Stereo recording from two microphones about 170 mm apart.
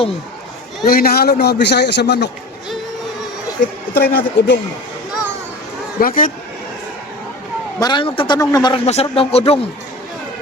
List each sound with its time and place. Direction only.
0.9 s a man's voice: 65° left (ahead or behind); by 2.3 s 80° left
3.6 s speech: 70° left (ahead or behind)
6.0 s speech: 55° left (ahead or behind)
7.8 s a man's voice: 25° left (ahead or behind)
8.9 s speech: 35° left (ahead or behind)